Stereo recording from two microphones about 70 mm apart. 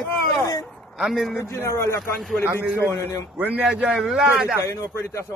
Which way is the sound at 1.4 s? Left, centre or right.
Left.